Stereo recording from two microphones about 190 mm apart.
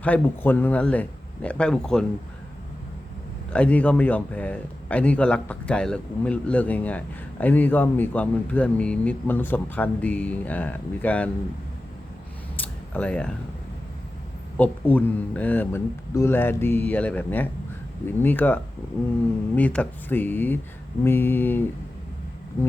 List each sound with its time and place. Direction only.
0.0 s speech: 10° left (ahead or behind)
3.5 s speech: 5° left (ahead or behind)
12.5 s a sound: 10° left (ahead or behind)
14.6 s speech: 10° left (ahead or behind)